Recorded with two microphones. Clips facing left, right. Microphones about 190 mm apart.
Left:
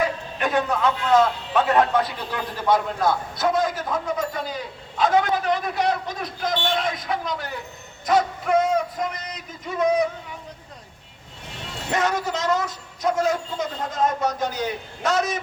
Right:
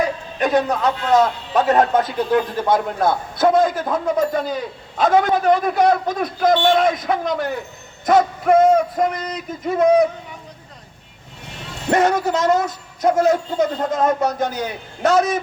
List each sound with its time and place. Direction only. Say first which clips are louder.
0.3 s a man's voice: right 5 dB; 40° right (ahead or behind)
11.9 s a man's voice: right 7 dB; 55° right (ahead or behind)